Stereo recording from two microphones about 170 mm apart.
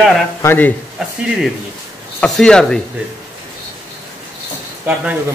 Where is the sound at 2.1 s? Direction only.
5° left (ahead or behind).